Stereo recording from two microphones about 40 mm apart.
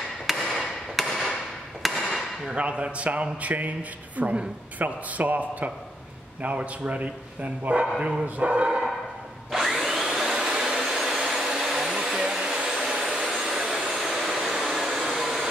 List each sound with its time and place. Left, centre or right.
0.3 s hammer: centre
2.0 s a sound: centre
2.5 s a man's voice: right
6.4 s a man's voice: right
8.4 s speech: right
9.5 s vacuum cleaner: centre